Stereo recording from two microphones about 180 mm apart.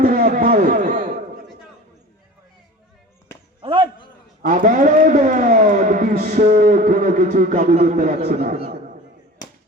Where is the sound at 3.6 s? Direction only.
30° right (ahead or behind).